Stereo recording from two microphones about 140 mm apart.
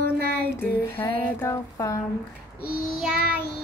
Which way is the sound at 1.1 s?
20° left (ahead or behind).